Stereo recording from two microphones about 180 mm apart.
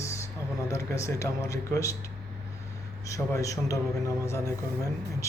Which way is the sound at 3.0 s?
15° left (ahead or behind).